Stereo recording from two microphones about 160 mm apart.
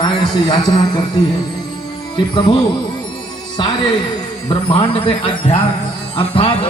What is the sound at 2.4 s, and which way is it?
A man's voice, 25° left (ahead or behind).